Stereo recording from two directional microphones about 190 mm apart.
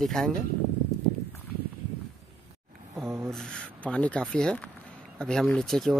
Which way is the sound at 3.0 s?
15° right (ahead or behind).